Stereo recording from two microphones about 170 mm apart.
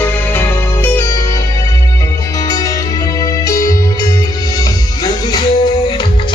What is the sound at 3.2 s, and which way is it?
Music, 20° left (ahead or behind).